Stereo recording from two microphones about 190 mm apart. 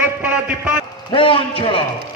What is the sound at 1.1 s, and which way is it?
Speech, 25° left (ahead or behind).